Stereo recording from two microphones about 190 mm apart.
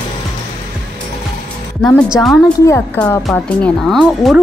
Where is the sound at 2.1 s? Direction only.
Centre (ahead or behind).